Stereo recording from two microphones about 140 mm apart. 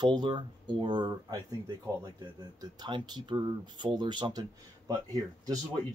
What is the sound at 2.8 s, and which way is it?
Speech, 35° right (ahead or behind).